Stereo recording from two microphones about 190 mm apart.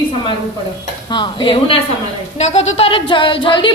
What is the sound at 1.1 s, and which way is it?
Speech, 25° left (ahead or behind).